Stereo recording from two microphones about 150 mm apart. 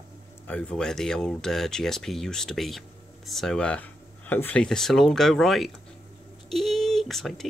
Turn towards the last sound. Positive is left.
turn(degrees=0)  # may be behind; listen again after turning